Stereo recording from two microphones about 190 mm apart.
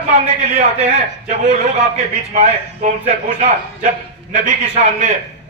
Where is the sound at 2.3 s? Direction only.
40° right (ahead or behind).